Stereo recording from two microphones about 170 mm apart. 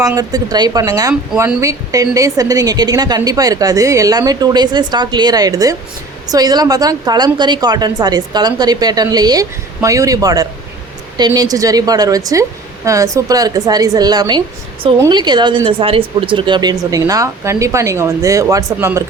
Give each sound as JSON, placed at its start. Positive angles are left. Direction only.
{"t": 0.1, "sound": "a woman's voice", "side_deg": -20}